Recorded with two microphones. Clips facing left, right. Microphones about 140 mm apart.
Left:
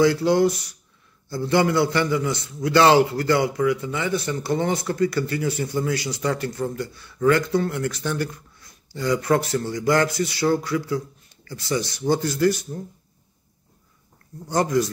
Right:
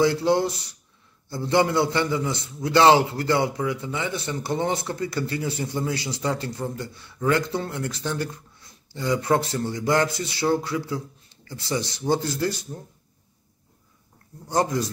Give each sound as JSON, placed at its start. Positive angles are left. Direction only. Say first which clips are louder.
{"t": 0.0, "sound": "a man's voice", "louder": "left 3 dB", "side_deg": -25}
{"t": 14.5, "sound": "a man's voice", "louder": "left 1 dB", "side_deg": -25}